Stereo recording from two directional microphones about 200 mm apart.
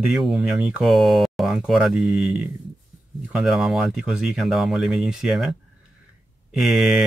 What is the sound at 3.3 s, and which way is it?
Speech, centre (ahead or behind).